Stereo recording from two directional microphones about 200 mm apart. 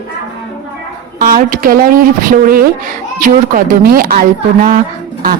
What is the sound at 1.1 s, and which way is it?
A woman's voice, 45° right (ahead or behind).